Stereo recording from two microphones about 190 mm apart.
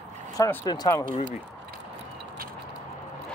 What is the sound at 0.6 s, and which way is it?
Speech, 20° left (ahead or behind).